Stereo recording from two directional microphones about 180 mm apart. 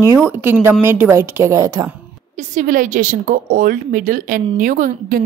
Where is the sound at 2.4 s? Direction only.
45° right (ahead or behind).